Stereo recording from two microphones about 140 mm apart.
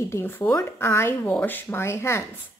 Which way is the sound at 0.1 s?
15° left (ahead or behind).